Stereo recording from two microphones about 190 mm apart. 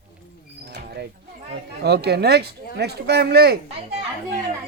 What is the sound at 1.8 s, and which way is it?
Speech, 60° right (ahead or behind).